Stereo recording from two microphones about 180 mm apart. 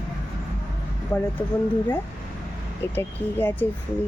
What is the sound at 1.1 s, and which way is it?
Speech, 15° left (ahead or behind).